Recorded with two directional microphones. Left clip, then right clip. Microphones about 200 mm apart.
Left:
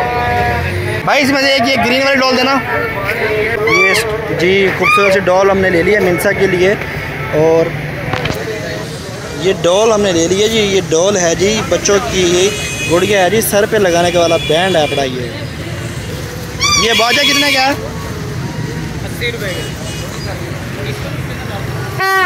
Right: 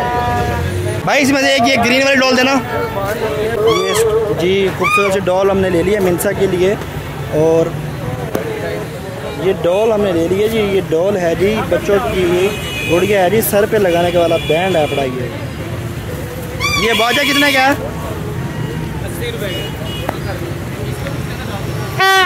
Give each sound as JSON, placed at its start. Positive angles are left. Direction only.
{"t": 1.0, "sound": "a man's voice", "side_deg": -20}
{"t": 3.8, "sound": "speech", "side_deg": -10}
{"t": 9.4, "sound": "speech", "side_deg": 0}
{"t": 16.8, "sound": "speech", "side_deg": -10}